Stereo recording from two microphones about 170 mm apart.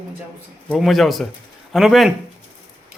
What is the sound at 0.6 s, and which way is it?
Speech, centre (ahead or behind).